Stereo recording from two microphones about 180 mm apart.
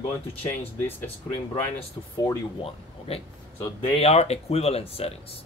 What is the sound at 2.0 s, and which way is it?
Speech, 20° left (ahead or behind).